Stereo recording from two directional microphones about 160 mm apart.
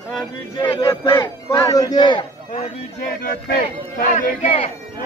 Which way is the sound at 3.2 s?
60° left (ahead or behind).